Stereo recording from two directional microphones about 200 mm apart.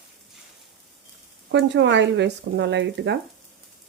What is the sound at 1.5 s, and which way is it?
Speech, 65° right (ahead or behind).